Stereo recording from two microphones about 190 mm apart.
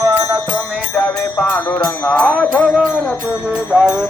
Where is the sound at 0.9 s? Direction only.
15° left (ahead or behind).